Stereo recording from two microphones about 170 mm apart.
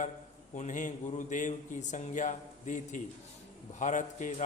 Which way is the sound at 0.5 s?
45° left (ahead or behind).